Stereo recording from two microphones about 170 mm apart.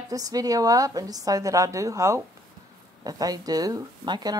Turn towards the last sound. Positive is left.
turn(degrees=-25)  # may be behind; listen again after turning